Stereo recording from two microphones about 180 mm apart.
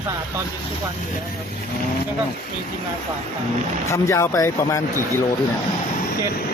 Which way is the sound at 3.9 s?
15° left (ahead or behind).